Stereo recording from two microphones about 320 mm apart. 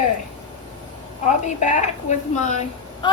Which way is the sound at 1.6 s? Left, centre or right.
Left.